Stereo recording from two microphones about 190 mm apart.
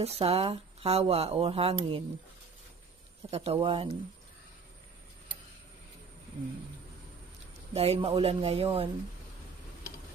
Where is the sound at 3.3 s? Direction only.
30° right (ahead or behind).